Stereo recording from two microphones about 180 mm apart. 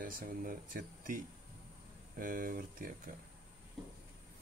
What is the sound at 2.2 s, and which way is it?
Speech, 50° right (ahead or behind).